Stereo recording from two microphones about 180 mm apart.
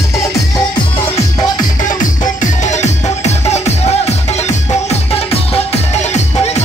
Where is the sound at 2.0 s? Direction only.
45° left (ahead or behind).